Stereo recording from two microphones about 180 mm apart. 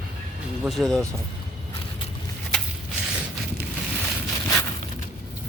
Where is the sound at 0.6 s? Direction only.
Centre (ahead or behind).